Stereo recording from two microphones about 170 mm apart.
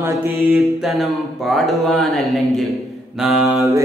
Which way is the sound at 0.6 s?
Centre (ahead or behind).